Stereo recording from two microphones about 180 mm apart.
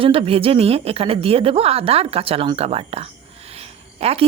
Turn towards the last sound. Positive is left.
turn(degrees=-35)  # may be behind; listen again after turning